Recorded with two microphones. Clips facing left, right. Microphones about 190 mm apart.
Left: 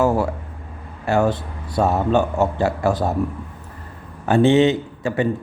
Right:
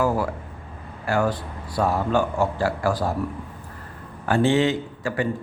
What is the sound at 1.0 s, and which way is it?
A man's voice, 25° left (ahead or behind).